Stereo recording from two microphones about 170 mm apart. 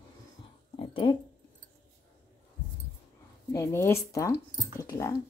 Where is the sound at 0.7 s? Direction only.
30° left (ahead or behind).